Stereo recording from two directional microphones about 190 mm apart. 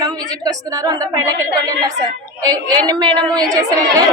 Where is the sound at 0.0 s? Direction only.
20° right (ahead or behind).